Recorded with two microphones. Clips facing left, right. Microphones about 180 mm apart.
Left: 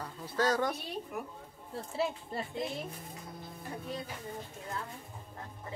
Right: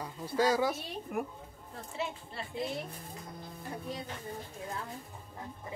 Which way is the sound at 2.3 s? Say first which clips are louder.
Left 5 dB; 45° left (ahead or behind).